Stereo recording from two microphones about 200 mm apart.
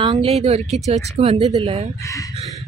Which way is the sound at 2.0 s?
15° left (ahead or behind).